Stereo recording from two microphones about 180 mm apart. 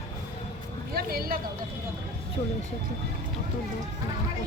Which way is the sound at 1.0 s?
60° right (ahead or behind).